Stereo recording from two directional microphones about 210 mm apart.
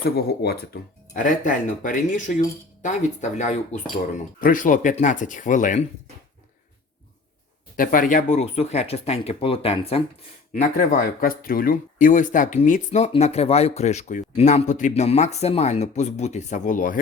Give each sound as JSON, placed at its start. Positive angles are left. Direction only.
{"t": 0.2, "sound": "speech", "side_deg": 50}
{"t": 7.8, "sound": "speech", "side_deg": 40}
{"t": 10.5, "sound": "speech", "side_deg": 40}